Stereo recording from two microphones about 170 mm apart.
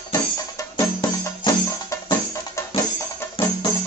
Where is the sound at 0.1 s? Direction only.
20° left (ahead or behind).